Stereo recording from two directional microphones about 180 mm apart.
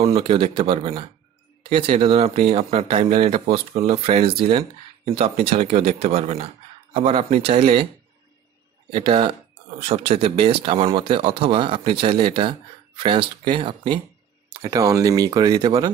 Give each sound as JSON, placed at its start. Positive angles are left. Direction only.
{"t": 0.0, "sound": "speech", "side_deg": -30}
{"t": 8.9, "sound": "speech", "side_deg": -30}